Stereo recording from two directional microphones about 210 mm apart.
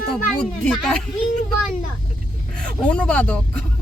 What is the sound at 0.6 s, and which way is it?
Speech, 5° left (ahead or behind).